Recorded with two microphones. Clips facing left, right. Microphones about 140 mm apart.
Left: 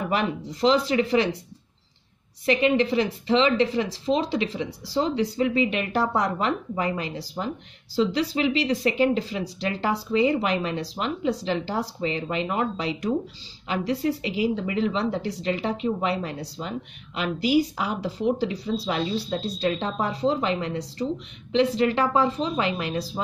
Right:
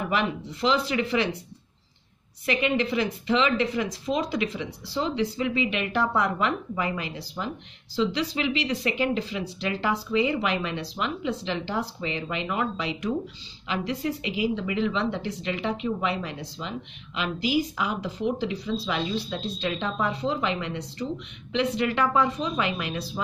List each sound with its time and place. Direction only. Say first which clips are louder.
0.1 s speech: left 1 dB; 35° left (ahead or behind)
2.4 s speech: left 4 dB; 30° left (ahead or behind)